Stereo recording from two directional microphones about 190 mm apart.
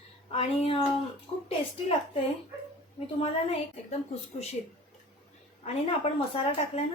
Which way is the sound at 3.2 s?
35° left (ahead or behind).